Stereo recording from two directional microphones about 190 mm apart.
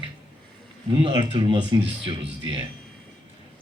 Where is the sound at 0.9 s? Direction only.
25° right (ahead or behind).